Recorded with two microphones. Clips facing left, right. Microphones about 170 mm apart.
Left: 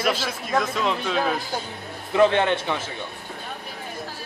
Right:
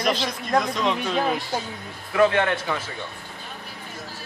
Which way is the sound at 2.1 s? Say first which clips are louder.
Left 1 dB; 25° left (ahead or behind).